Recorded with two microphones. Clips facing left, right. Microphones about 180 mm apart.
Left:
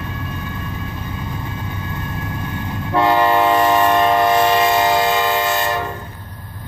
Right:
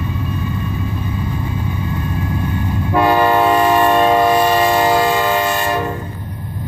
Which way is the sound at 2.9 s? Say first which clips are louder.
Right 1 dB; 10° right (ahead or behind).